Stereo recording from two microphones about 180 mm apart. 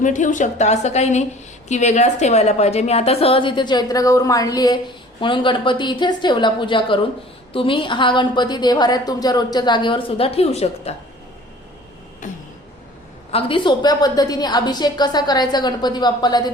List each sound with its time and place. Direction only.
0.0 s a woman's voice: 45° left (ahead or behind)
13.3 s a woman's voice: 25° left (ahead or behind)